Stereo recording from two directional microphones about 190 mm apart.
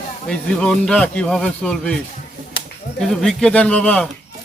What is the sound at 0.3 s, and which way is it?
A man's voice, 5° left (ahead or behind).